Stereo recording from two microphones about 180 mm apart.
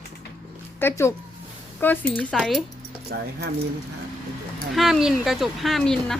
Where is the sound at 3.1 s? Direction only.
60° right (ahead or behind).